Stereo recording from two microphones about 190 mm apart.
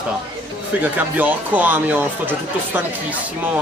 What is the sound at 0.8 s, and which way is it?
Speech, 10° right (ahead or behind).